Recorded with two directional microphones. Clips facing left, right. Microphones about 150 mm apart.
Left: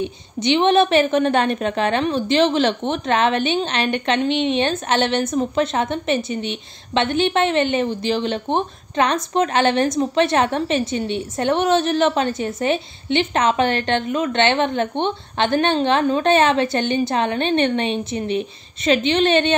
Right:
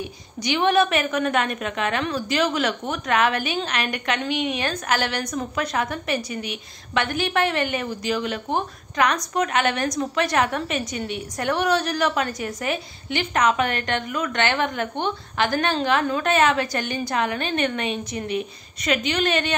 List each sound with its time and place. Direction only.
0.0 s a woman's voice: 25° left (ahead or behind)